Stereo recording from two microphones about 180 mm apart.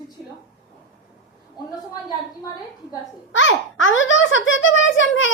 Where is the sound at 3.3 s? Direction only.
90° left.